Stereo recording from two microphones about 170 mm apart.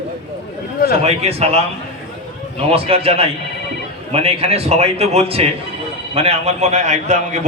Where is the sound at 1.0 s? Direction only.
40° right (ahead or behind).